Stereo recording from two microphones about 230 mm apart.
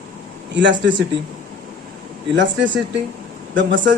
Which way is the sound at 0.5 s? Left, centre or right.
Right.